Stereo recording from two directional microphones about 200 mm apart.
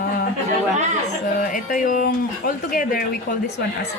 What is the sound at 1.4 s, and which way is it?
Music, 40° left (ahead or behind).